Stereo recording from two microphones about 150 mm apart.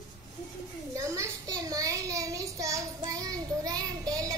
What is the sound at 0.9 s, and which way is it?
A child's voice, 20° right (ahead or behind).